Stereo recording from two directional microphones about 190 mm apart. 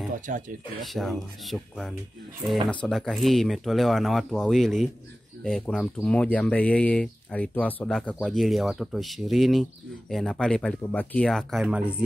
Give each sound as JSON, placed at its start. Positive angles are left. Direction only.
{"t": 0.3, "sound": "speech", "side_deg": -45}
{"t": 0.8, "sound": "speech", "side_deg": 0}